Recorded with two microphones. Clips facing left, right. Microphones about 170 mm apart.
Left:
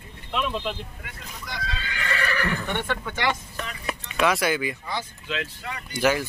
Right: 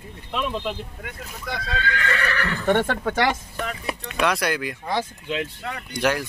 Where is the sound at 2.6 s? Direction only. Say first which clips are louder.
Right 8 dB; 45° right (ahead or behind).